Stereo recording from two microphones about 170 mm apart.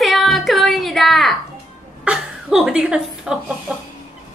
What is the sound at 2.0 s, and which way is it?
Chuckle, 5° right (ahead or behind).